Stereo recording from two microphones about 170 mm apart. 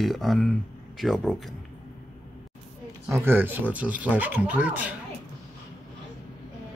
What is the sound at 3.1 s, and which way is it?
Speech, 15° right (ahead or behind).